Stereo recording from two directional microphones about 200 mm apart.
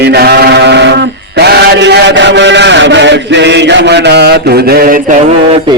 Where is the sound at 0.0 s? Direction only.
55° right (ahead or behind).